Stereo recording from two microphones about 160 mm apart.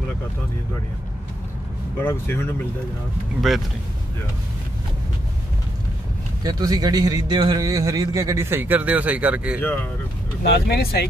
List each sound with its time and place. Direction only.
2.0 s speech: 15° left (ahead or behind)
3.3 s speech: centre (ahead or behind)
6.4 s a man's voice: 25° right (ahead or behind); by 9.6 s 10° right (ahead or behind)
10.5 s speech: 80° left